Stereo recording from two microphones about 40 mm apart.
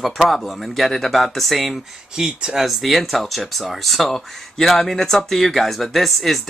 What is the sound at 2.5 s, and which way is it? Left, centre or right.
Speech, centre.